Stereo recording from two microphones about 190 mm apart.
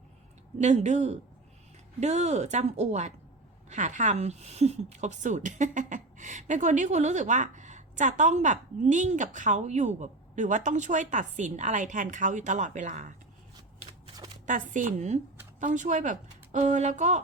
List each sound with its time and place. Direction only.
0.6 s a woman's voice: 40° right (ahead or behind)
14.4 s a woman's voice: 40° right (ahead or behind)